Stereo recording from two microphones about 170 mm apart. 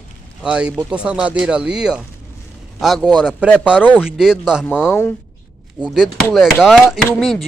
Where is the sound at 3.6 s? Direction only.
5° right (ahead or behind).